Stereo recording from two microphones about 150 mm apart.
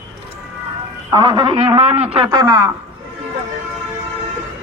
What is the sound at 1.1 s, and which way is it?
A man's voice, 30° right (ahead or behind).